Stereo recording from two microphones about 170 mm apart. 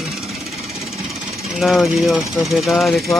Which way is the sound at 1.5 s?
Centre (ahead or behind).